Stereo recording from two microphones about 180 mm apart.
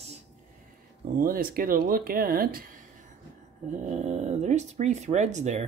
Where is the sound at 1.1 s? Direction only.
55° right (ahead or behind).